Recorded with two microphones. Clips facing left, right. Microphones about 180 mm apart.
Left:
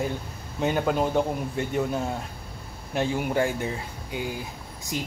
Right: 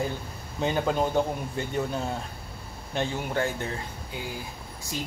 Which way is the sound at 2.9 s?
10° left (ahead or behind).